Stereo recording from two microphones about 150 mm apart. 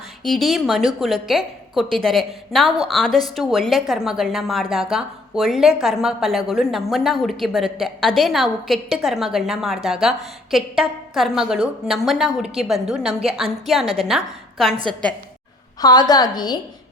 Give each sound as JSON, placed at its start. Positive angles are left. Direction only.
{"t": 0.2, "sound": "a woman's voice", "side_deg": 0}
{"t": 13.1, "sound": "a woman's voice", "side_deg": -40}
{"t": 13.3, "sound": "a woman's voice", "side_deg": 0}
{"t": 15.8, "sound": "a woman's voice", "side_deg": 25}